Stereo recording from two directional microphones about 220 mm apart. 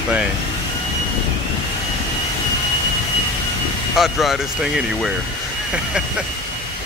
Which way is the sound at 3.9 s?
Centre (ahead or behind).